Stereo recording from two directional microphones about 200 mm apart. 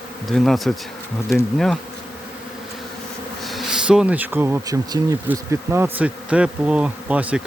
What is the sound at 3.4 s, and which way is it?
Speech, centre (ahead or behind).